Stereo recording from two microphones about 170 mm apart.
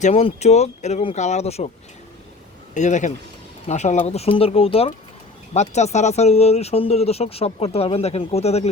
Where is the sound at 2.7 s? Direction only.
45° left (ahead or behind).